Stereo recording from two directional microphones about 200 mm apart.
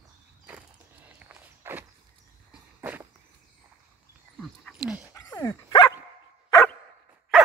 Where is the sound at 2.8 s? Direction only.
10° right (ahead or behind).